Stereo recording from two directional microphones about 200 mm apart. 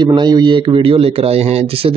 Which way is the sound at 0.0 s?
20° right (ahead or behind).